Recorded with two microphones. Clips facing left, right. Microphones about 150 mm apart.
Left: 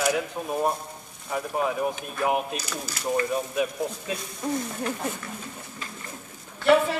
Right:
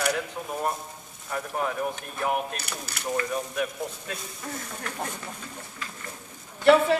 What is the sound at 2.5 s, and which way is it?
Speech, 65° right (ahead or behind).